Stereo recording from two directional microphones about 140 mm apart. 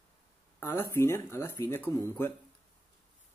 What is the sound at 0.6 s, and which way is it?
Speech, 15° left (ahead or behind).